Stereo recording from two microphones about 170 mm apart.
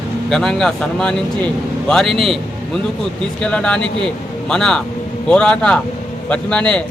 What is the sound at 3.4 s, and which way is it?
Speech, 5° left (ahead or behind).